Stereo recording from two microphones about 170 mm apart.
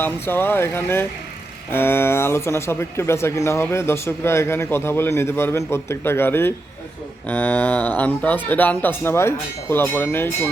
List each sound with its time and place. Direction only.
0.0 s speech: 15° left (ahead or behind)